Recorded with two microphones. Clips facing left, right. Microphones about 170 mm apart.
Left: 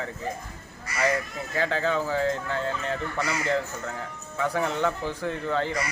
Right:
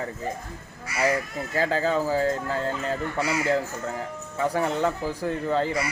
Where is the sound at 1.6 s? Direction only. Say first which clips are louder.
Right 2 dB; 40° right (ahead or behind).